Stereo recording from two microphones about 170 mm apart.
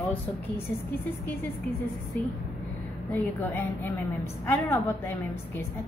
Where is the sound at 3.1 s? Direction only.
10° left (ahead or behind).